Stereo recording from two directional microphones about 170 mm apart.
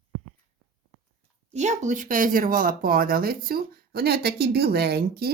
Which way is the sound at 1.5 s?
45° right (ahead or behind).